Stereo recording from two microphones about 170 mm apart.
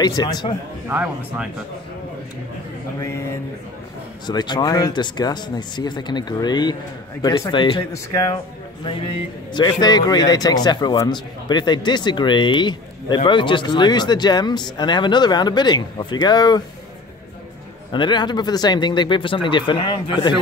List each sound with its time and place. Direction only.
0.0 s speech: 25° left (ahead or behind)
0.8 s speech: 10° right (ahead or behind)
3.0 s speech: 15° left (ahead or behind)
4.3 s speech: 25° left (ahead or behind)
17.9 s speech: 25° left (ahead or behind)